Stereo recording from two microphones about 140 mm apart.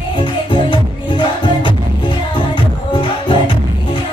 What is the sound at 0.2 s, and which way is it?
Music, 35° left (ahead or behind).